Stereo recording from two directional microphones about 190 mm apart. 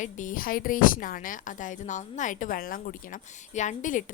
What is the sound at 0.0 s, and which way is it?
Speech, 45° left (ahead or behind).